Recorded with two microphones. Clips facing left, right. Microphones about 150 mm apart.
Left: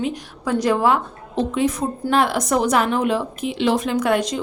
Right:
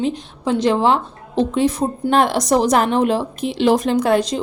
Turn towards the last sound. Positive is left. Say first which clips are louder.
# right 3 dB
turn(degrees=-35)  # may be behind; listen again after turning